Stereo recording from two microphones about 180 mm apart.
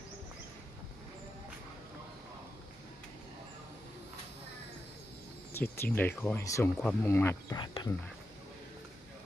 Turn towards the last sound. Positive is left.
turn(degrees=25)  # may be behind; listen again after turning